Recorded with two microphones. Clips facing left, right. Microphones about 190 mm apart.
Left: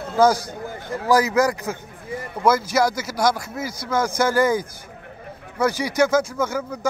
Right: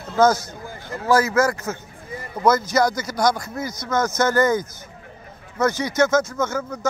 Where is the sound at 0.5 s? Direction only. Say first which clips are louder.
Left 4 dB; 15° left (ahead or behind).